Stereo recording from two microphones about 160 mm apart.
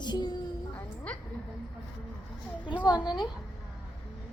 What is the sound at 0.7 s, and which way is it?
Music, 10° left (ahead or behind).